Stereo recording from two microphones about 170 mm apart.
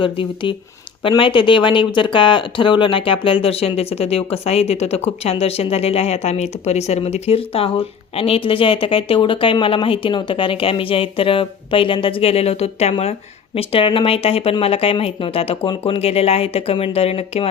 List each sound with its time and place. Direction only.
0.0 s speech: 30° left (ahead or behind)